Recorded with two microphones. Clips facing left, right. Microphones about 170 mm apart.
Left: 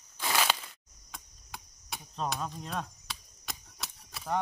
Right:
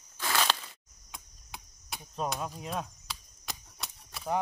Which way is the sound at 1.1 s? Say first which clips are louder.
Left 1 dB; centre (ahead or behind).